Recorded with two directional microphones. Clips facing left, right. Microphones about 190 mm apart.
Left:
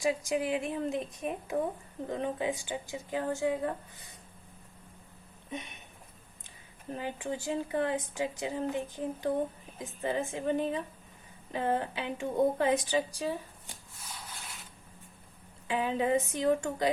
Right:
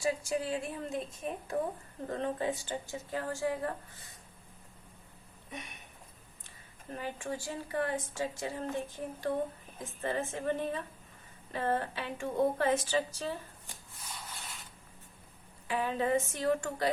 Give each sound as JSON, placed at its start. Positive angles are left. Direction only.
{"t": 0.0, "sound": "speech", "side_deg": 15}
{"t": 5.5, "sound": "a sound", "side_deg": 25}
{"t": 6.9, "sound": "a woman's voice", "side_deg": 20}
{"t": 15.6, "sound": "speech", "side_deg": 20}